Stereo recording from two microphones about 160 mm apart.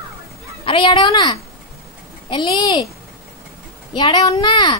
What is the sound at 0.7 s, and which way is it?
A woman's voice, 30° left (ahead or behind).